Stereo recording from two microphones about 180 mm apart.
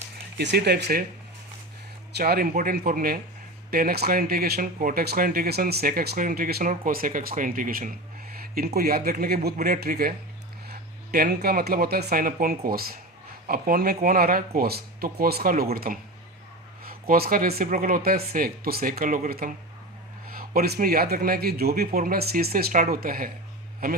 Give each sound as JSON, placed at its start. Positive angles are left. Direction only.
{"t": 0.3, "sound": "a man's voice", "side_deg": -65}
{"t": 2.1, "sound": "a man's voice", "side_deg": -60}